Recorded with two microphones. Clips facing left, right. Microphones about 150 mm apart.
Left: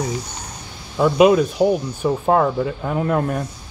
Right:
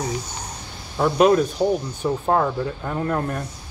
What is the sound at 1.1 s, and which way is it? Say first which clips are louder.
Speech: left 3 dB; 5° left (ahead or behind).